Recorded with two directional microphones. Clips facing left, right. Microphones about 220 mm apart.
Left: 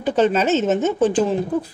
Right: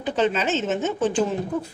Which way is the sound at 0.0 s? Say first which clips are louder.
Left 5 dB; 40° left (ahead or behind).